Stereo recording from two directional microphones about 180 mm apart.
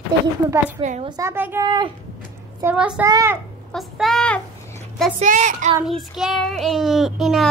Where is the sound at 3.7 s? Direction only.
Centre (ahead or behind).